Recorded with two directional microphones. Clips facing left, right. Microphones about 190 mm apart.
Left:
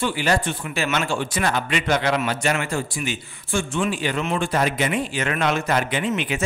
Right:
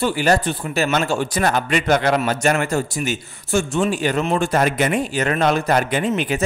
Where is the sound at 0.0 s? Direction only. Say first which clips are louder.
Right 4 dB; 40° right (ahead or behind).